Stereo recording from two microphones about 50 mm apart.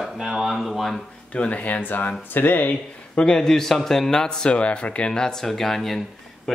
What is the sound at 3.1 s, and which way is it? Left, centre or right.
Speech, centre.